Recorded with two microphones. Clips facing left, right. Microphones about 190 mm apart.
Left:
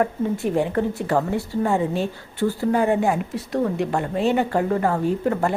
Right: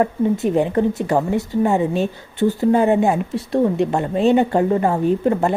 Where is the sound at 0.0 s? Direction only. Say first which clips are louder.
Right 4 dB; 20° right (ahead or behind).